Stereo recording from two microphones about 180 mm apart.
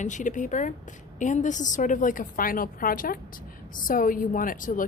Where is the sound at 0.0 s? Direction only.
45° left (ahead or behind).